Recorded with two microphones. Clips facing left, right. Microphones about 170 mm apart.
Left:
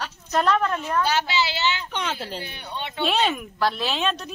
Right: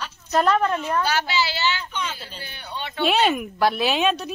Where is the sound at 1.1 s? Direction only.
20° left (ahead or behind).